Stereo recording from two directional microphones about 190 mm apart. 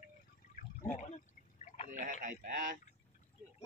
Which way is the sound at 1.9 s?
40° right (ahead or behind).